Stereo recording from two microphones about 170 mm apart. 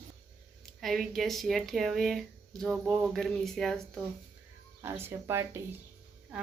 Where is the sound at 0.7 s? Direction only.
Centre (ahead or behind).